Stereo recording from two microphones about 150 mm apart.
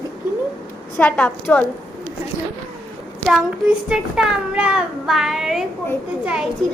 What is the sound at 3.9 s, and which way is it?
A child's voice, 5° right (ahead or behind).